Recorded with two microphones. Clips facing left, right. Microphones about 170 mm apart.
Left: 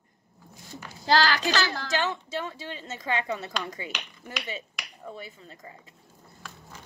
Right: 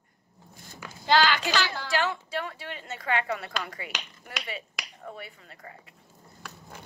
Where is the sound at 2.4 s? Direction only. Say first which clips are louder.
Left 1 dB; 20° left (ahead or behind).